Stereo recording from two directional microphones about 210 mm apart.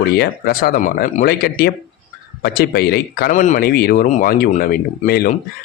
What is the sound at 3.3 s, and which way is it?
Speech, 35° left (ahead or behind).